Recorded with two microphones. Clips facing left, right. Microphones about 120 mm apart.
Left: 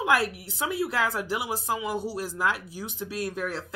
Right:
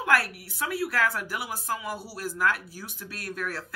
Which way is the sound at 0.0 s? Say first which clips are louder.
Left 1 dB; 20° left (ahead or behind).